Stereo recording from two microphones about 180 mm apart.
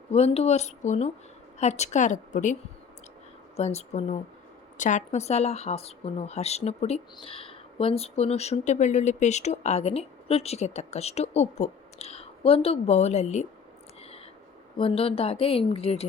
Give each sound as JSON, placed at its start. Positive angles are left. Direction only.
{"t": 0.1, "sound": "speech", "side_deg": 35}
{"t": 14.8, "sound": "speech", "side_deg": 30}